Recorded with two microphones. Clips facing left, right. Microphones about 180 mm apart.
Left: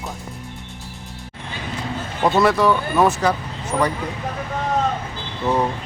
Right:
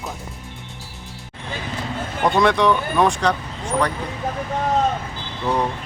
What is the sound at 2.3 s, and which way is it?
Speech, 5° left (ahead or behind).